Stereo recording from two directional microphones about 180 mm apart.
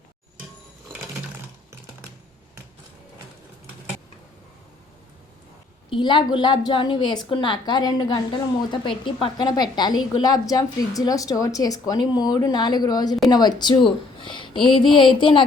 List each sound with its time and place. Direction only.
5.9 s a woman's voice: 25° left (ahead or behind)